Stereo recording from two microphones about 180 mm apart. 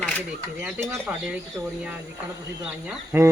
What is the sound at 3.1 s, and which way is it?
Speech, 10° right (ahead or behind).